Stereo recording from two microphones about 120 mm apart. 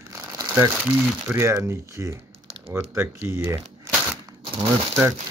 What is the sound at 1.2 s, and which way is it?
Speech, 20° right (ahead or behind).